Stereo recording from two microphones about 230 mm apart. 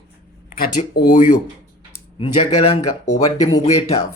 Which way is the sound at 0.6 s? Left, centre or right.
Left.